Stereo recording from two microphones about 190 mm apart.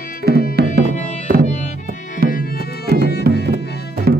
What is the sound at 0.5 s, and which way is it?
Music, 55° right (ahead or behind).